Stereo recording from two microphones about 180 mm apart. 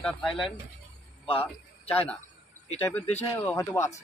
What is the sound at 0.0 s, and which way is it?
A man's voice, 5° left (ahead or behind).